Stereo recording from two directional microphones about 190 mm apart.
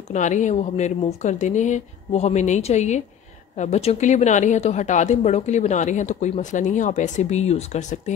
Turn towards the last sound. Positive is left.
turn(degrees=35)  # may be behind; listen again after turning